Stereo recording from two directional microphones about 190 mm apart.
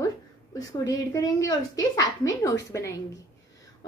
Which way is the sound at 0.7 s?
20° left (ahead or behind).